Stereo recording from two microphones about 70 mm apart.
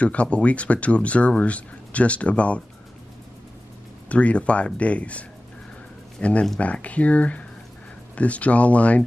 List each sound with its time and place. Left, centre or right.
0.0 s speech: centre
4.1 s speech: centre